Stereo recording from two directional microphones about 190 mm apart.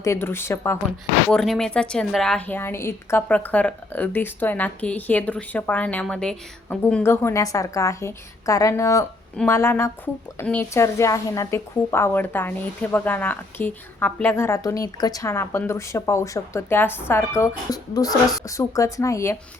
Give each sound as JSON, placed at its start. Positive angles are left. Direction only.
{"t": 0.0, "sound": "speech", "side_deg": 15}
{"t": 1.3, "sound": "speech", "side_deg": 0}